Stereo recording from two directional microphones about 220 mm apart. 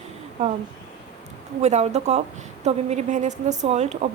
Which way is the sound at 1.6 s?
30° right (ahead or behind).